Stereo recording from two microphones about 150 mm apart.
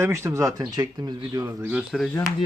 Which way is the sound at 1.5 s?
10° right (ahead or behind).